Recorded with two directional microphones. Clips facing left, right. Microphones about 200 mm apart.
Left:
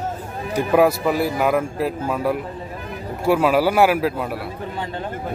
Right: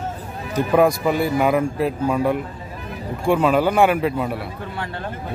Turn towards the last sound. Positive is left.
turn(degrees=0)  # may be behind; listen again after turning